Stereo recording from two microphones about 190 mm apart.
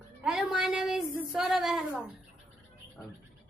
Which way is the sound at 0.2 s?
5° right (ahead or behind).